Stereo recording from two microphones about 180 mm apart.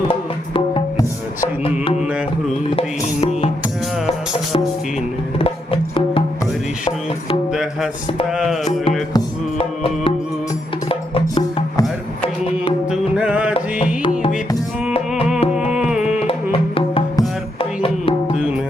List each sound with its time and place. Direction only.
0.1 s music: 30° left (ahead or behind)
5.4 s music: 30° left (ahead or behind)
7.5 s music: centre (ahead or behind)
9.1 s music: 30° left (ahead or behind)
12.9 s music: 5° right (ahead or behind)
15.7 s music: 5° right (ahead or behind)
16.2 s music: 30° left (ahead or behind)
18.3 s music: 5° right (ahead or behind)